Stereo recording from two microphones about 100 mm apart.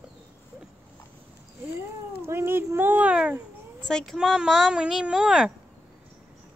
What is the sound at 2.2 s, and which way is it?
Speech, 25° right (ahead or behind).